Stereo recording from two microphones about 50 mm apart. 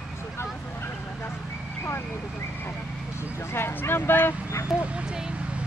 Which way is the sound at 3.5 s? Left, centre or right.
Left.